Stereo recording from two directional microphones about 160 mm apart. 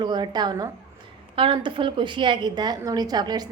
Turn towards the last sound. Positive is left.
turn(degrees=-25)  # may be behind; listen again after turning